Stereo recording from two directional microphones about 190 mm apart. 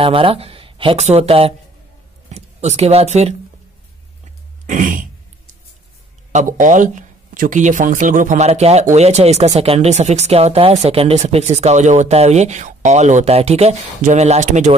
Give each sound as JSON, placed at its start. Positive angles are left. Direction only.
{"t": 0.0, "sound": "speech", "side_deg": -30}
{"t": 4.6, "sound": "throat clearing", "side_deg": -45}
{"t": 6.3, "sound": "speech", "side_deg": -40}